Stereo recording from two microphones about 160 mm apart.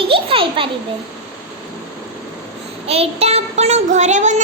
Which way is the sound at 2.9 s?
40° right (ahead or behind).